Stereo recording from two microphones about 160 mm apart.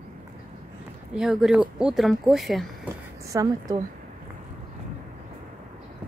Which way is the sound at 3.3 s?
20° right (ahead or behind).